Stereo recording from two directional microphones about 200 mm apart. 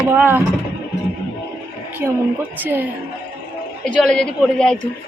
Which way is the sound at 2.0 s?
10° right (ahead or behind).